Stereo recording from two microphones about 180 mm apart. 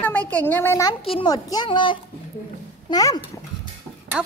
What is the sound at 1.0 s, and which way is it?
A woman's voice, 30° left (ahead or behind).